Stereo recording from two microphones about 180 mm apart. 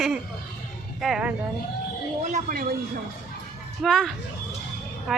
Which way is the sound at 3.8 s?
Centre (ahead or behind).